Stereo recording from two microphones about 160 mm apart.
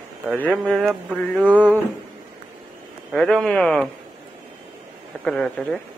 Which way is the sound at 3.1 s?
Centre (ahead or behind).